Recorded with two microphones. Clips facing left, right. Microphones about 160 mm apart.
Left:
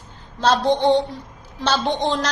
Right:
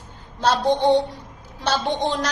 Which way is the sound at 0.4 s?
10° right (ahead or behind).